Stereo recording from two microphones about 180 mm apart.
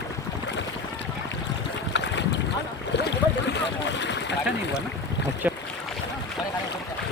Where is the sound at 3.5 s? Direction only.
75° left (ahead or behind).